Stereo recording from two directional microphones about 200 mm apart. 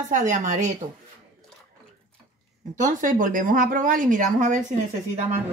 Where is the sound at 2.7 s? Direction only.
40° right (ahead or behind).